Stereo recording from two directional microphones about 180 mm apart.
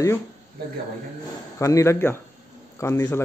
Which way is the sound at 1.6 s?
15° left (ahead or behind).